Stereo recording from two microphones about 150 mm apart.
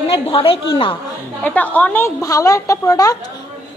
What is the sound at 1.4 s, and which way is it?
A woman's voice, 10° left (ahead or behind).